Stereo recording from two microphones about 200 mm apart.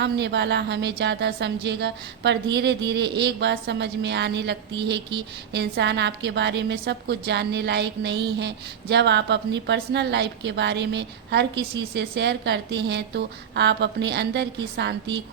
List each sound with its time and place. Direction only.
0.0 s a woman's voice: 60° right (ahead or behind)